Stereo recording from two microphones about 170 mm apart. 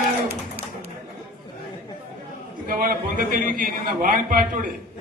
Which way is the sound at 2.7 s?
55° right (ahead or behind).